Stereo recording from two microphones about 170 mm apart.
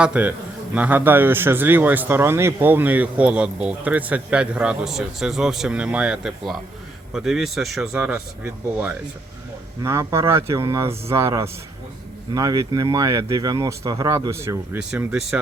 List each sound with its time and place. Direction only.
0.0 s a man's voice: 10° right (ahead or behind)
14.8 s speech: 5° right (ahead or behind)